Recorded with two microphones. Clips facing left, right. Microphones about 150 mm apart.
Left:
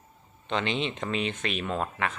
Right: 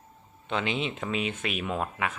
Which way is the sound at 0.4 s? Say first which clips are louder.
Left 1 dB; 5° right (ahead or behind).